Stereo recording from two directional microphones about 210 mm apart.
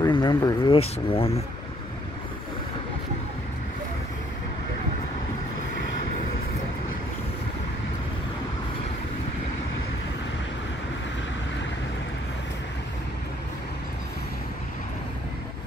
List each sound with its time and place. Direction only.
0.0 s speech: 20° left (ahead or behind)